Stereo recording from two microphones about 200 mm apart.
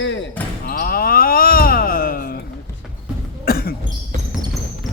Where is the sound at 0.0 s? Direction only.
65° left (ahead or behind).